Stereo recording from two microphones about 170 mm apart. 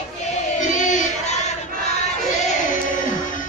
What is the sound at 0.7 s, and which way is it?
Crowd, 45° left (ahead or behind).